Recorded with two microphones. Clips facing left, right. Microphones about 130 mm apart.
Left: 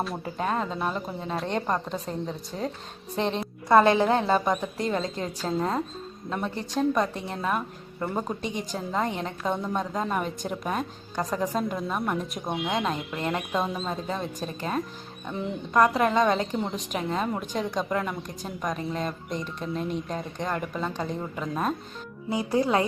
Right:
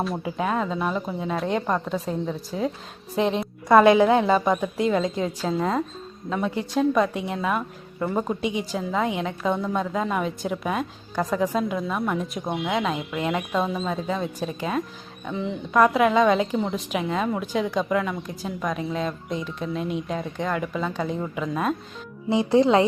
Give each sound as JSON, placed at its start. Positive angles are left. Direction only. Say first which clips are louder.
{"t": 0.0, "sound": "a woman's voice", "louder": "right 3 dB", "side_deg": 0}
{"t": 15.3, "sound": "speech", "louder": "right 3 dB", "side_deg": 0}
{"t": 22.3, "sound": "speech", "louder": "right 6 dB", "side_deg": -25}